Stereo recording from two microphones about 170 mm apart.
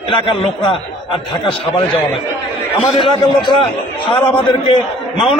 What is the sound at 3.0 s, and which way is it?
A man's voice, 25° left (ahead or behind).